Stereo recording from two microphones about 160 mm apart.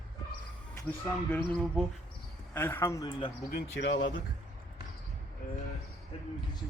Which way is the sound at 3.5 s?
85° left.